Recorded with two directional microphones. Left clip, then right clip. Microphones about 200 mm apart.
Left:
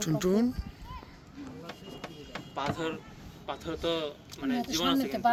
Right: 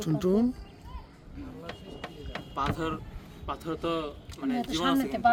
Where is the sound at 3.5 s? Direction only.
65° right (ahead or behind).